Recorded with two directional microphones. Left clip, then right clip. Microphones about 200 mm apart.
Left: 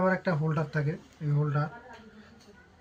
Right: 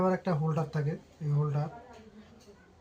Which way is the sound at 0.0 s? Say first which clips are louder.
Left 2 dB; 30° right (ahead or behind).